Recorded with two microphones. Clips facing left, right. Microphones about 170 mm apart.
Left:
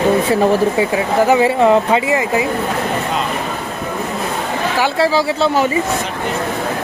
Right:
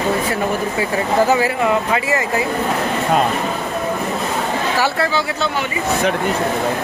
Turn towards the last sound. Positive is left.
turn(degrees=35)  # may be behind; listen again after turning